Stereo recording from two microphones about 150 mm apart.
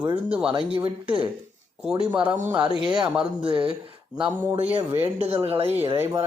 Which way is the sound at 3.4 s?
35° right (ahead or behind).